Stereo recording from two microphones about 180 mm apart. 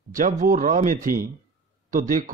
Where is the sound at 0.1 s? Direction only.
50° right (ahead or behind).